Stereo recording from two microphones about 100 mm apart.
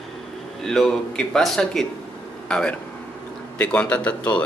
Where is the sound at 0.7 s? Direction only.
5° left (ahead or behind).